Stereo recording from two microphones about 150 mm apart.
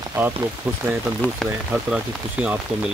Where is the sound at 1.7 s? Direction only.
10° right (ahead or behind).